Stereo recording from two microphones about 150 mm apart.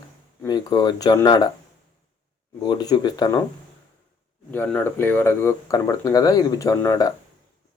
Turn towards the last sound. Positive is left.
turn(degrees=20)  # may be behind; listen again after turning